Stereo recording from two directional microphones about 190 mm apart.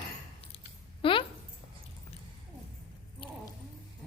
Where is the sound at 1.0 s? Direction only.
25° left (ahead or behind).